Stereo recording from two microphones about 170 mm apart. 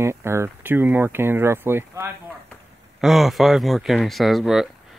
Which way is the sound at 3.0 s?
Centre (ahead or behind).